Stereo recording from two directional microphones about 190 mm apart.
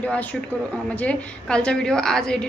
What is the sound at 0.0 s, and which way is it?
A woman's voice, 10° left (ahead or behind).